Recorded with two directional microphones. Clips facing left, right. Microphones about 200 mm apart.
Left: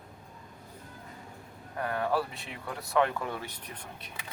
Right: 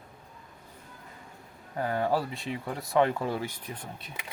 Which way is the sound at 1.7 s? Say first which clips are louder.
Right 2 dB; 25° right (ahead or behind).